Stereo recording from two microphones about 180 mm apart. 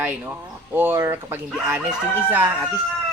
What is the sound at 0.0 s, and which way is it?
A man's voice, 10° right (ahead or behind).